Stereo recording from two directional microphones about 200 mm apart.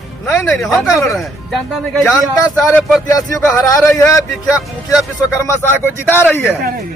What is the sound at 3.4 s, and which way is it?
Speech, 5° left (ahead or behind).